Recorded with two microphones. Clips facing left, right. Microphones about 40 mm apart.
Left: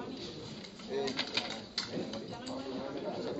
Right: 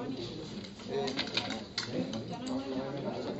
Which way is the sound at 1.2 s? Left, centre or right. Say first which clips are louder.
Right 1 dB; right.